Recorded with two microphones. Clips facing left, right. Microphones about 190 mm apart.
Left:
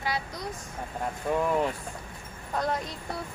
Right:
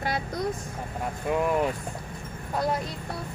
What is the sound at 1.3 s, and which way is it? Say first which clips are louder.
Speech: right 1 dB; 10° right (ahead or behind).